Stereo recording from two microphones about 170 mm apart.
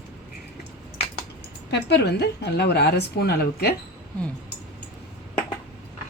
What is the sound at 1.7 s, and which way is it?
A woman's voice, 80° left.